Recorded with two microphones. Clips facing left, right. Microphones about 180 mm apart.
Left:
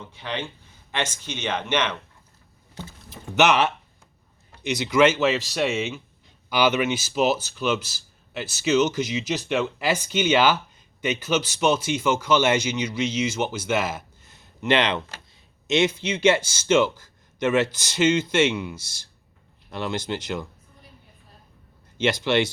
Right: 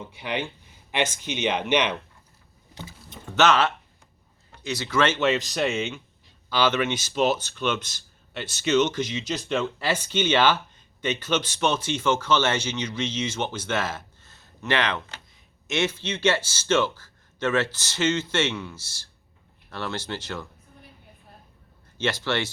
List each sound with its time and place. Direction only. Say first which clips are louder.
0.0 s speech: right 2 dB; 15° right (ahead or behind)
3.1 s speech: left 1 dB; 10° left (ahead or behind)
21.9 s speech: left 5 dB; 15° left (ahead or behind)